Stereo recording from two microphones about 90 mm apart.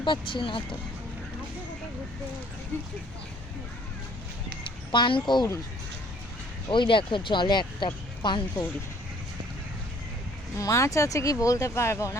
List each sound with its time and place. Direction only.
0.0 s speech: 65° left (ahead or behind)
4.6 s speech: 60° left (ahead or behind)
6.7 s speech: 65° left (ahead or behind)
10.6 s speech: 35° left (ahead or behind)